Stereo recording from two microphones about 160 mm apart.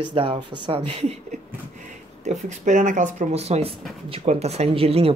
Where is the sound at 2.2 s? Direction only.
50° right (ahead or behind).